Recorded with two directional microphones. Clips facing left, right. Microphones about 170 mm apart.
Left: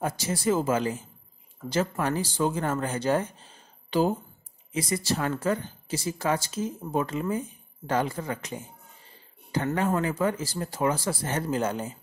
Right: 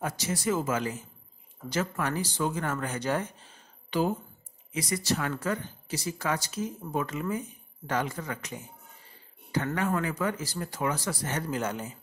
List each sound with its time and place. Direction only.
0.0 s speech: 30° left (ahead or behind)
4.7 s speech: 30° left (ahead or behind)